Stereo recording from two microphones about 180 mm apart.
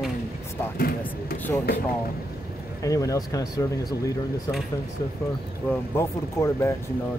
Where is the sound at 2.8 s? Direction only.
20° left (ahead or behind).